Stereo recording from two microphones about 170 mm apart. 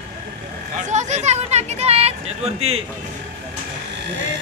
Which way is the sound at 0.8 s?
45° right (ahead or behind).